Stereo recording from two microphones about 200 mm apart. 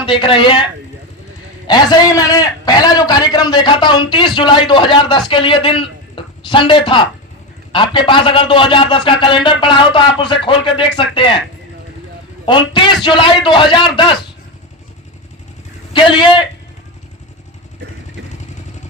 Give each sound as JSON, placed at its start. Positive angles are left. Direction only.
{"t": 0.0, "sound": "a man's voice", "side_deg": 25}
{"t": 1.6, "sound": "a man's voice", "side_deg": 20}
{"t": 12.5, "sound": "a man's voice", "side_deg": 25}
{"t": 15.9, "sound": "a man's voice", "side_deg": 25}